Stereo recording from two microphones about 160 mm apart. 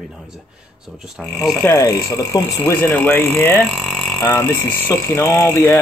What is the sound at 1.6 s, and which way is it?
Speech, 15° left (ahead or behind).